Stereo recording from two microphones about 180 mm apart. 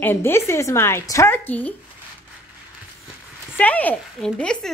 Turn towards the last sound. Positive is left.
turn(degrees=5)  # may be behind; listen again after turning